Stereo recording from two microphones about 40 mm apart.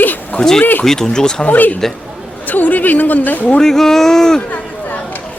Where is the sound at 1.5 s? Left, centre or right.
Left.